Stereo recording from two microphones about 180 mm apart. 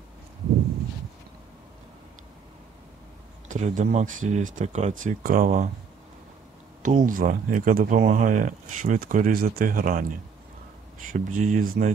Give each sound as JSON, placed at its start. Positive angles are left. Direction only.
{"t": 3.4, "sound": "speech", "side_deg": -45}
{"t": 6.8, "sound": "speech", "side_deg": -45}